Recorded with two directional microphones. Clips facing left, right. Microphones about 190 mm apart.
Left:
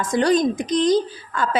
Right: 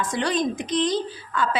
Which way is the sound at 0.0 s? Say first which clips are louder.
Left 6 dB; 40° left (ahead or behind).